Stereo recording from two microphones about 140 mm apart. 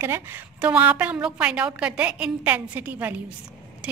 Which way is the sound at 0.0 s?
20° right (ahead or behind).